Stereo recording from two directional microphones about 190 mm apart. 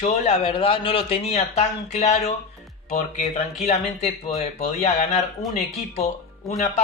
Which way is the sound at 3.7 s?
35° left (ahead or behind).